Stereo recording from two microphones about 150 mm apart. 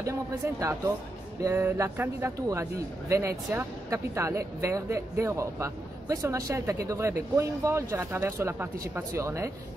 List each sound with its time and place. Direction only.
0.0 s a man's voice: 20° right (ahead or behind)